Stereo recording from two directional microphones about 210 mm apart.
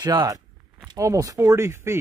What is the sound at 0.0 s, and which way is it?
Speech, 15° right (ahead or behind).